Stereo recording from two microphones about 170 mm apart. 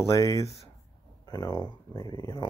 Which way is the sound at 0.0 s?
20° left (ahead or behind).